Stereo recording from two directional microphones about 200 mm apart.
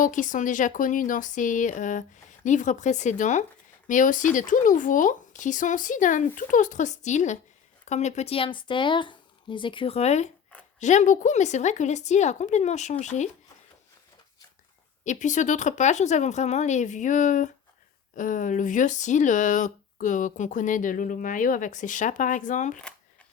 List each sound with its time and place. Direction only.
0.0 s speech: 40° left (ahead or behind)
15.0 s speech: 35° left (ahead or behind)